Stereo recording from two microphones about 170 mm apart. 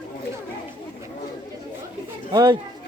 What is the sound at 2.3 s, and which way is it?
Speech, 25° right (ahead or behind).